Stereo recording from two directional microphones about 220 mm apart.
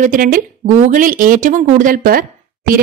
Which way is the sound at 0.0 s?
40° right (ahead or behind).